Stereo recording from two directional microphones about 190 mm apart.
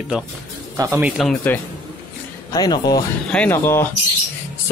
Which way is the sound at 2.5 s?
20° left (ahead or behind).